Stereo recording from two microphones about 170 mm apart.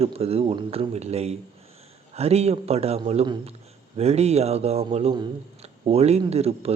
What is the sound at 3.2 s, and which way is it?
Speech, 25° right (ahead or behind).